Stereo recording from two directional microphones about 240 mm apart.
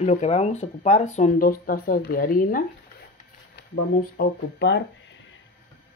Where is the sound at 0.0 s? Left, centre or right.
Left.